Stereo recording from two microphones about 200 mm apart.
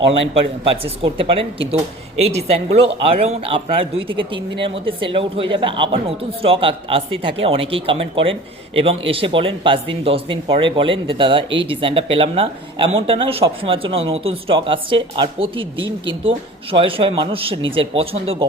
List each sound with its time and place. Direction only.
0.6 s speech: 25° right (ahead or behind)